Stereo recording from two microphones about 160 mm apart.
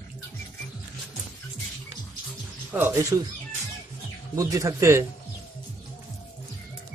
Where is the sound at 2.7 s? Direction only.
15° right (ahead or behind).